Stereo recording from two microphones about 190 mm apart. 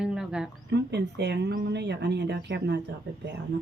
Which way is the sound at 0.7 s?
60° right (ahead or behind).